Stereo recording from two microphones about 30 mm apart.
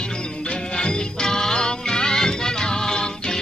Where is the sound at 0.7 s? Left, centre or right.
Left.